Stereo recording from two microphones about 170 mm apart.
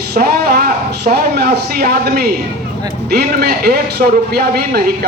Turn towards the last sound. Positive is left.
turn(degrees=-65)  # may be behind; listen again after turning